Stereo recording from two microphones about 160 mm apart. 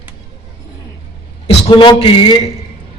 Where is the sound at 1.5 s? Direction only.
30° left (ahead or behind).